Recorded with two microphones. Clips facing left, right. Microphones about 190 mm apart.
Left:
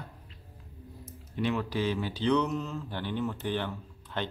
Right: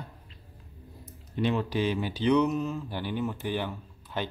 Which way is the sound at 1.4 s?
25° right (ahead or behind).